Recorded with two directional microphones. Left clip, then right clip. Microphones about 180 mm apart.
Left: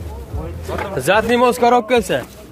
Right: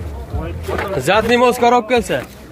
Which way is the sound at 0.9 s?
5° left (ahead or behind).